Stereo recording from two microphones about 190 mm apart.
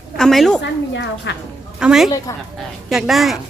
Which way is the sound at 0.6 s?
65° left (ahead or behind).